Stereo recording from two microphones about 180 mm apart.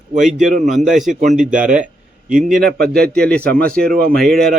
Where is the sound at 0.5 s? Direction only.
45° right (ahead or behind).